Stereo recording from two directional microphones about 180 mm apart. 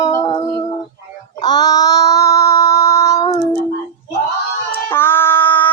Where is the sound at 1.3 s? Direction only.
25° left (ahead or behind).